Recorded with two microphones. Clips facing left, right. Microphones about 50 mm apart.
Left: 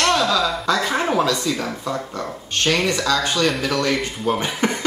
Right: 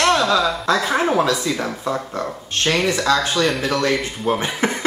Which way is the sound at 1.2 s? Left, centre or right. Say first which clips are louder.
Right 1 dB; centre.